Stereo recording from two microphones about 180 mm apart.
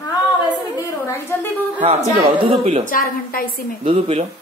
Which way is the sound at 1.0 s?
15° left (ahead or behind).